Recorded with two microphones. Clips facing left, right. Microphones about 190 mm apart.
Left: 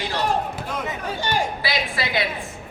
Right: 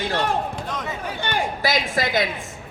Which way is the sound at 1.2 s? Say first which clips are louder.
Even; 50° right (ahead or behind).